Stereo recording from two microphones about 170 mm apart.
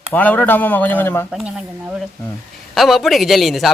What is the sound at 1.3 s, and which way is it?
A man's voice, 5° right (ahead or behind).